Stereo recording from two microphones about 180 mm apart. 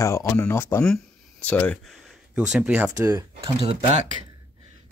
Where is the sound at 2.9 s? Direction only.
20° right (ahead or behind).